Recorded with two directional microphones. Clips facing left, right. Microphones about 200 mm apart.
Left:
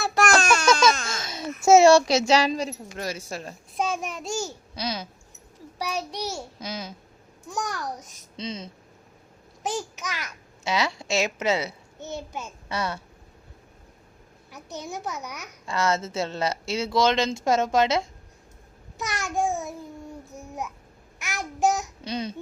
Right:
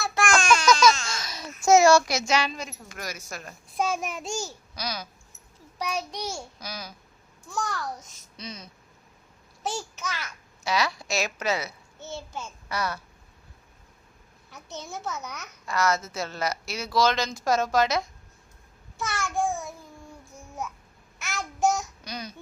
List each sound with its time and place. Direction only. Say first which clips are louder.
0.0 s a sound: left 3 dB; 40° left (ahead or behind)
0.6 s baby cry: even; 25° left (ahead or behind)
1.1 s babbling: left 3 dB; 25° left (ahead or behind)
1.6 s speech: left 3 dB; 30° left (ahead or behind)
3.8 s a child's voice: even; centre (ahead or behind)
4.7 s speech: left 4 dB; 25° left (ahead or behind)
5.8 s a child's voice: left 1 dB; 5° left (ahead or behind)
6.6 s a child's voice: left 5 dB; 25° left (ahead or behind)
14.5 s a child's voice: left 3 dB; 15° left (ahead or behind)
15.6 s speech: left 1 dB; 25° left (ahead or behind)
18.9 s babbling: left 1 dB; 15° left (ahead or behind)
21.2 s a child's voice: left 1 dB; 15° left (ahead or behind)
22.0 s speech: left 7 dB; 25° left (ahead or behind)